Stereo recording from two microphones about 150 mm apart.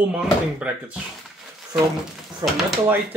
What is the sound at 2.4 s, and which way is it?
Speech, 25° right (ahead or behind).